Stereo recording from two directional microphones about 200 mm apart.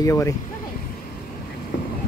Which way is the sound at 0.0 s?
15° left (ahead or behind).